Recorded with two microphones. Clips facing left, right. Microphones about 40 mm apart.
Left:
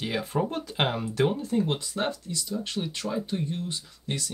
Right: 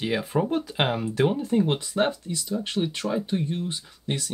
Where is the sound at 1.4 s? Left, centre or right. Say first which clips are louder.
Right 4 dB; right.